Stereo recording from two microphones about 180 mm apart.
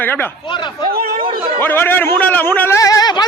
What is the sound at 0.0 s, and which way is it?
Speech, 10° left (ahead or behind).